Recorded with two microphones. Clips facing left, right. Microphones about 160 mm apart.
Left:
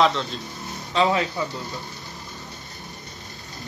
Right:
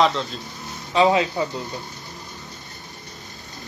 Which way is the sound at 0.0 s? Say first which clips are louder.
Right 1 dB; centre (ahead or behind).